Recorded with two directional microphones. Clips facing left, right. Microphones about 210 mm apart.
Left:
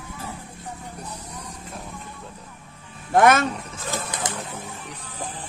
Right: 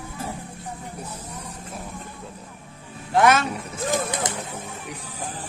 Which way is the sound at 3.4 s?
10° right (ahead or behind).